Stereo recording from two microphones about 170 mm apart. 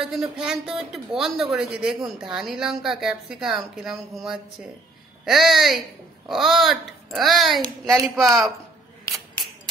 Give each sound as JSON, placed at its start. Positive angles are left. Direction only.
{"t": 0.0, "sound": "speech", "side_deg": 0}